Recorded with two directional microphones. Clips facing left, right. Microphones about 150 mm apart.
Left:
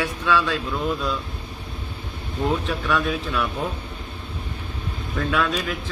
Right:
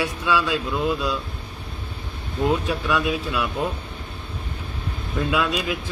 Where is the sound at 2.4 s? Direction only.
10° right (ahead or behind).